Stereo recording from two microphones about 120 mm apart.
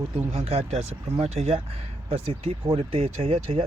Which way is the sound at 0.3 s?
55° right (ahead or behind).